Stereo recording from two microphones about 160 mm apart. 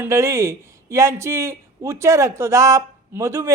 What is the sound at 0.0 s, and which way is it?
Speech, 20° right (ahead or behind).